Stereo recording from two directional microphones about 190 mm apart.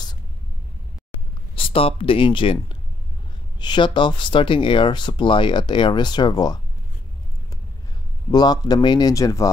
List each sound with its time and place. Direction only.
1.5 s speech: 30° left (ahead or behind)
8.3 s speech: 20° left (ahead or behind)